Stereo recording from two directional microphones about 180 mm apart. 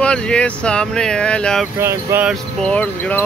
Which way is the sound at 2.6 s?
5° left (ahead or behind).